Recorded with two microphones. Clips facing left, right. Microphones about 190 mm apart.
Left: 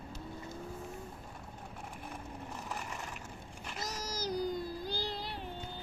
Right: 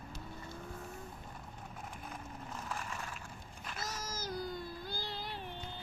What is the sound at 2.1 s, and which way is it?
Vehicle, 15° left (ahead or behind).